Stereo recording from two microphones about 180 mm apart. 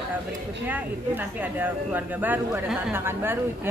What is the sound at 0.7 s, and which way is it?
Speech, 10° right (ahead or behind).